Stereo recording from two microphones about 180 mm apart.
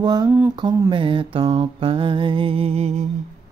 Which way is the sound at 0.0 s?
25° right (ahead or behind).